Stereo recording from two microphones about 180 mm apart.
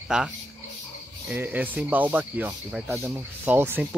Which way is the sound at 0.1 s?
5° right (ahead or behind).